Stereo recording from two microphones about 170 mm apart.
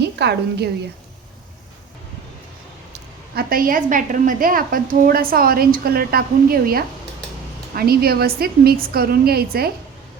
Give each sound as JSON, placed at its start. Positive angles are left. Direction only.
{"t": 0.0, "sound": "a woman's voice", "side_deg": -75}
{"t": 2.9, "sound": "a woman's voice", "side_deg": -60}